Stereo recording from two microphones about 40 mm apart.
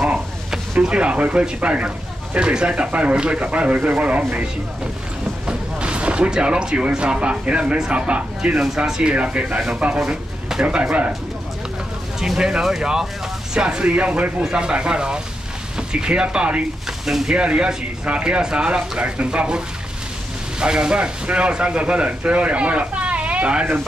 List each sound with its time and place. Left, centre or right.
0.8 s speech: right
5.5 s a sound: right
7.0 s speech: right
8.5 s speech: centre
9.1 s speech: right
9.9 s a sound: centre
10.6 s speech: right
12.2 s speech: centre; by 14.3 s right
14.4 s speech: right
17.0 s speech: centre
17.3 s speech: right